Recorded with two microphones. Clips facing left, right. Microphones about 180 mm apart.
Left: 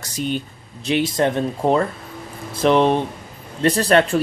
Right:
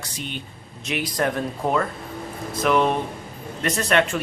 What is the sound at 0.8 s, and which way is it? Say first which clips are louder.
Speech: left 6 dB; 25° left (ahead or behind).